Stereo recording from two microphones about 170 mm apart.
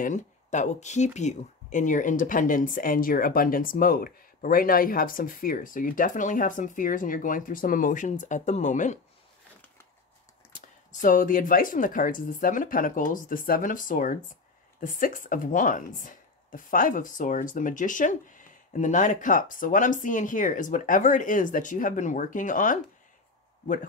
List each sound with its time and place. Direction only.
0.0 s speech: 45° left (ahead or behind)
10.9 s speech: 50° left (ahead or behind)